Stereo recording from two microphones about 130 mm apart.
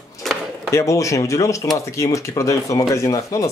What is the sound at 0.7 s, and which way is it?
Speech, 25° left (ahead or behind).